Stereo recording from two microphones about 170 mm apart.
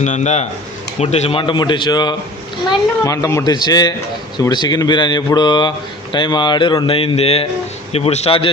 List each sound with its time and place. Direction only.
0.0 s a man's voice: 45° left (ahead or behind)